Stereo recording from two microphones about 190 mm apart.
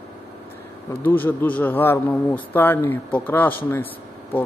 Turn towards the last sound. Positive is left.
turn(degrees=10)  # may be behind; listen again after turning